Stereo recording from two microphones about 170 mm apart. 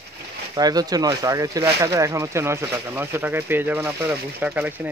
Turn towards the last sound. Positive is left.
turn(degrees=-10)  # may be behind; listen again after turning